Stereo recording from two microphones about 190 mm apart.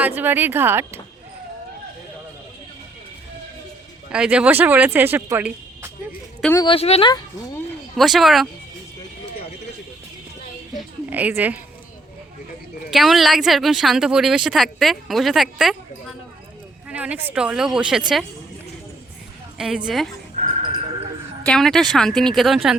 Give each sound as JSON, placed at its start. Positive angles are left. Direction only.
{"t": 0.2, "sound": "speech", "side_deg": -10}
{"t": 4.1, "sound": "speech", "side_deg": -5}
{"t": 6.5, "sound": "speech", "side_deg": 20}
{"t": 6.7, "sound": "speech", "side_deg": 30}
{"t": 7.9, "sound": "speech", "side_deg": 0}
{"t": 10.8, "sound": "a woman's voice", "side_deg": -10}
{"t": 12.9, "sound": "speech", "side_deg": 0}
{"t": 19.5, "sound": "a woman's voice", "side_deg": 0}
{"t": 20.3, "sound": "a sound", "side_deg": -40}
{"t": 21.4, "sound": "speech", "side_deg": 5}